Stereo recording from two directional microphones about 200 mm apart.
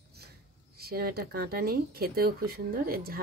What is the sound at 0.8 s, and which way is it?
Speech, 50° right (ahead or behind).